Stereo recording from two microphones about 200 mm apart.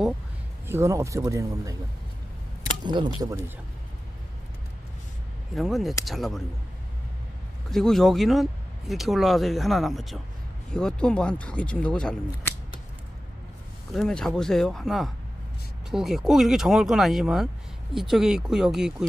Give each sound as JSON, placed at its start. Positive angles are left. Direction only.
{"t": 0.7, "sound": "speech", "side_deg": -15}
{"t": 2.8, "sound": "speech", "side_deg": -20}
{"t": 5.5, "sound": "speech", "side_deg": 0}
{"t": 7.7, "sound": "speech", "side_deg": 0}
{"t": 13.9, "sound": "speech", "side_deg": 5}